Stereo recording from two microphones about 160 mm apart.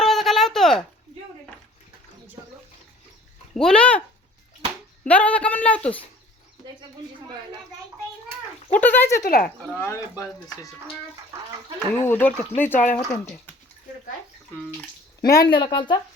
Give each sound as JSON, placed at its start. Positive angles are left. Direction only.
{"t": 0.0, "sound": "a sound", "side_deg": 0}
{"t": 3.5, "sound": "speech", "side_deg": 5}
{"t": 5.0, "sound": "speech", "side_deg": 10}
{"t": 8.7, "sound": "speech", "side_deg": 10}
{"t": 9.2, "sound": "speech", "side_deg": 65}
{"t": 9.7, "sound": "speech", "side_deg": 15}
{"t": 12.0, "sound": "speech", "side_deg": 15}
{"t": 15.3, "sound": "speech", "side_deg": 25}